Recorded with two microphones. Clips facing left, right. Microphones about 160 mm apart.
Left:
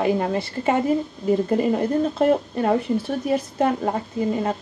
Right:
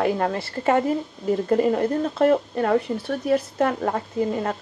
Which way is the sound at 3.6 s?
15° left (ahead or behind).